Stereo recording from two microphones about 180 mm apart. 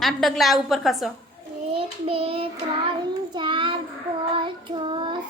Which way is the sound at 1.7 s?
30° right (ahead or behind).